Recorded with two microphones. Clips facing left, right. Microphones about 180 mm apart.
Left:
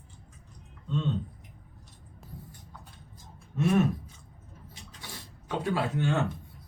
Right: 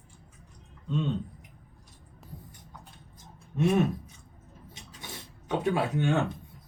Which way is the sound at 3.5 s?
20° right (ahead or behind).